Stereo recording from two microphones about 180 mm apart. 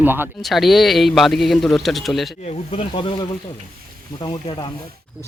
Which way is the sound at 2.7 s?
30° left (ahead or behind).